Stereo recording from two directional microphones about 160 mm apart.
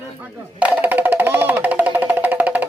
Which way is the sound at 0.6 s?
10° right (ahead or behind).